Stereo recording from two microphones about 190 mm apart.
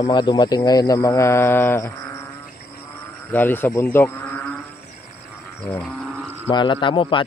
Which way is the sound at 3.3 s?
10° left (ahead or behind).